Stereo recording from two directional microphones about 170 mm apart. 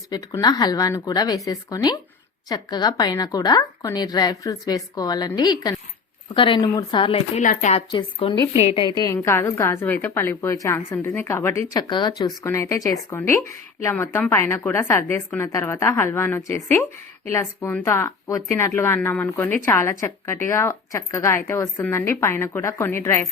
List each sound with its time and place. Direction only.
0.1 s speech: 25° left (ahead or behind)
7.4 s speech: 45° left (ahead or behind)
7.8 s a woman's voice: 30° left (ahead or behind); by 23.2 s 15° left (ahead or behind)